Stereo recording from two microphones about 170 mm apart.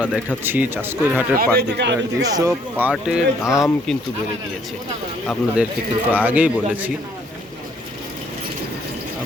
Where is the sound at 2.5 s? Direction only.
10° right (ahead or behind).